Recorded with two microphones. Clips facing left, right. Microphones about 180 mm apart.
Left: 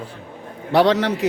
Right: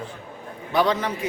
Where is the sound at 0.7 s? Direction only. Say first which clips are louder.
Left 6 dB; 75° left (ahead or behind).